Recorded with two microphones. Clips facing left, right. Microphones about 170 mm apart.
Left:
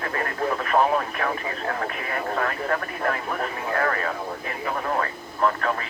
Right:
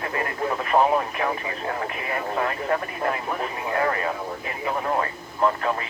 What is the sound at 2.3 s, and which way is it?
Speech, 20° right (ahead or behind).